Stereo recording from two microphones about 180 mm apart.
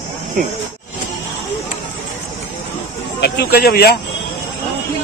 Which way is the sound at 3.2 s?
60° left (ahead or behind).